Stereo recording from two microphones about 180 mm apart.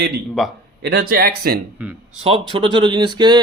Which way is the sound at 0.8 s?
55° right (ahead or behind).